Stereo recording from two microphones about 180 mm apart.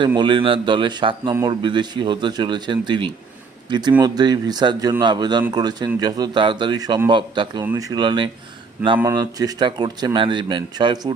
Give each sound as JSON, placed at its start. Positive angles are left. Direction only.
{"t": 0.1, "sound": "speech", "side_deg": -25}